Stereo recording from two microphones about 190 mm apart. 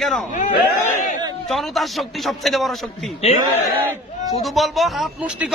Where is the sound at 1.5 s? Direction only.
Centre (ahead or behind).